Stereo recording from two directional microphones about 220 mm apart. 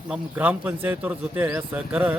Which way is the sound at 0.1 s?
5° right (ahead or behind).